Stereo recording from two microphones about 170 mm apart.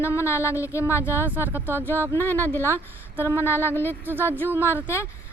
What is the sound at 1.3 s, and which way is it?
Speech, 10° right (ahead or behind).